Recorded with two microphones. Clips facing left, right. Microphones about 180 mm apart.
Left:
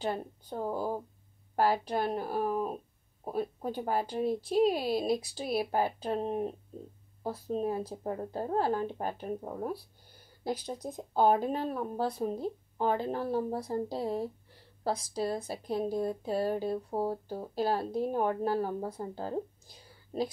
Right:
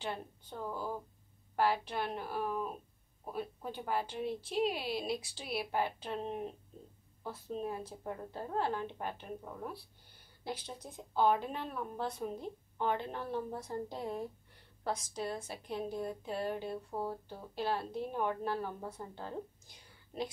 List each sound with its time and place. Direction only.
0.0 s a woman's voice: 40° left (ahead or behind)